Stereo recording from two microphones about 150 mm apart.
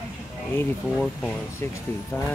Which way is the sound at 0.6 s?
10° left (ahead or behind).